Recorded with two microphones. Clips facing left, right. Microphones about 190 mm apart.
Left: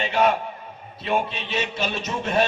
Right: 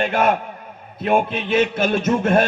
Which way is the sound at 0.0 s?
50° right (ahead or behind).